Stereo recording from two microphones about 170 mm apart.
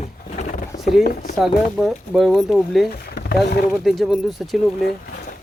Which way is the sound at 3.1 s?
70° left (ahead or behind).